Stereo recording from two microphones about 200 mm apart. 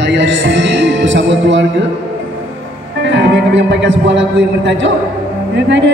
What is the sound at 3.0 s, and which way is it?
Speech, 65° right (ahead or behind).